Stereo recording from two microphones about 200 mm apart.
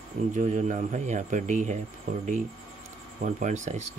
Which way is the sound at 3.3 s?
40° right (ahead or behind).